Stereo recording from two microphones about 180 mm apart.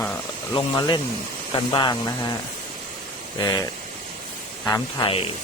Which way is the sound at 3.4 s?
25° left (ahead or behind).